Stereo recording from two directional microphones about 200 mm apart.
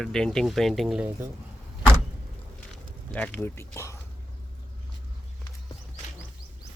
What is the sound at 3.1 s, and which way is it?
Speech, 5° left (ahead or behind).